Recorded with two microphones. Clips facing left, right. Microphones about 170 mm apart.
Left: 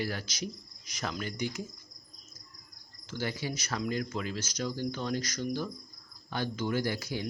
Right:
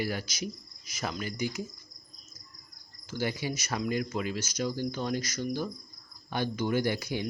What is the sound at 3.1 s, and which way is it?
Speech, 10° right (ahead or behind).